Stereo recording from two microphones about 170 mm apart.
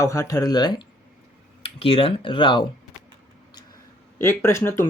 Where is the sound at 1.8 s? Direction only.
35° left (ahead or behind).